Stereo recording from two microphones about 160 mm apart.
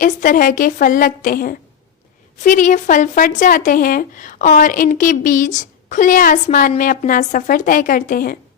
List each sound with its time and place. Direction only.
0.0 s speech: 55° left (ahead or behind)
2.4 s speech: 55° left (ahead or behind)